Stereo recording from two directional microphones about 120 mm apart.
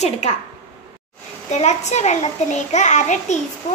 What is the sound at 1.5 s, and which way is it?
A child's voice, 70° left (ahead or behind).